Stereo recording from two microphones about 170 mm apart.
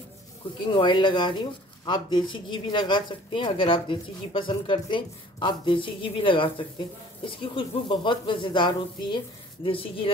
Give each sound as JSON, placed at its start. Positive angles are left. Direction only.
{"t": 0.7, "sound": "speech", "side_deg": 30}